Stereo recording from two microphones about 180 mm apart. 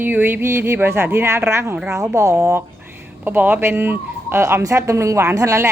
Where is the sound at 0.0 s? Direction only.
10° right (ahead or behind).